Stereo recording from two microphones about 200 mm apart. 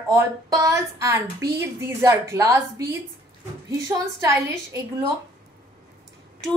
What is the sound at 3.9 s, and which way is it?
Speech, 15° right (ahead or behind).